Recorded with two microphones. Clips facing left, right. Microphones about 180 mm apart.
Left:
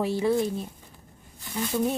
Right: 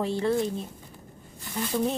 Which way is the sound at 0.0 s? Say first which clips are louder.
Left 2 dB; 10° left (ahead or behind).